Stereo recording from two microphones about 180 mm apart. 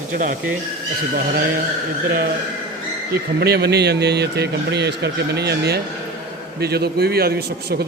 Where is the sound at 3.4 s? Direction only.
65° right (ahead or behind).